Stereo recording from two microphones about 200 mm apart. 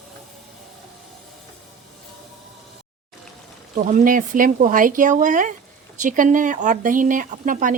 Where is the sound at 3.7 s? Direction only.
40° right (ahead or behind).